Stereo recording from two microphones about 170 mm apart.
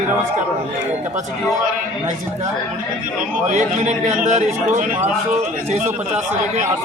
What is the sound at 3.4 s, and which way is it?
A man's voice, 45° right (ahead or behind).